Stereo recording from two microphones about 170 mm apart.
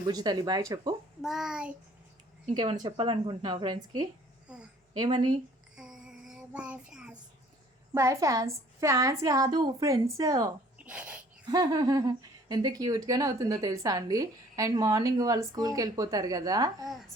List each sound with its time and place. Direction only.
0.1 s speech: 25° right (ahead or behind)
1.2 s child singing: centre (ahead or behind)
2.8 s speech: 30° right (ahead or behind)
5.7 s child singing: 5° right (ahead or behind)
7.9 s speech: 20° right (ahead or behind)
10.8 s a sound: 10° right (ahead or behind)
11.5 s speech: 25° right (ahead or behind)